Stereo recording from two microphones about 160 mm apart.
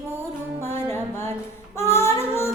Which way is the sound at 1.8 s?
15° left (ahead or behind).